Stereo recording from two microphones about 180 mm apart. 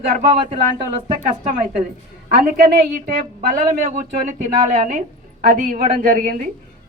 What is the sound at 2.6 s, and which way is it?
Speech, 55° right (ahead or behind).